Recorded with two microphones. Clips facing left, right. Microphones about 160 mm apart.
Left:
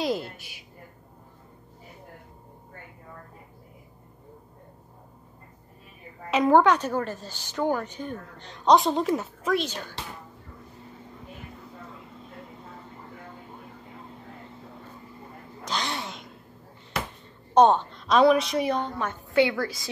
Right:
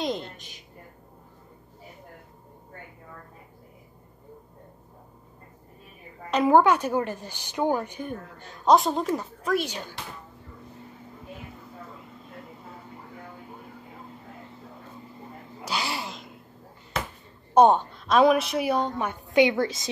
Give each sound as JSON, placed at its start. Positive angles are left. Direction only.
{"t": 0.0, "sound": "a sound", "side_deg": 5}
{"t": 6.3, "sound": "a woman's voice", "side_deg": -5}
{"t": 9.6, "sound": "a woman's voice", "side_deg": -15}
{"t": 15.6, "sound": "sneeze", "side_deg": -5}
{"t": 17.6, "sound": "a woman's voice", "side_deg": -10}